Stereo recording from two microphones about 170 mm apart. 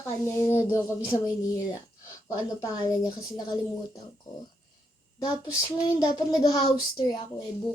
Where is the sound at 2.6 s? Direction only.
20° left (ahead or behind).